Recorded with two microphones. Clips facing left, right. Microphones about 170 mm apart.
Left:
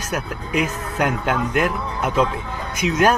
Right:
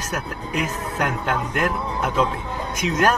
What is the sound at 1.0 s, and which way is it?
Speech, 10° left (ahead or behind).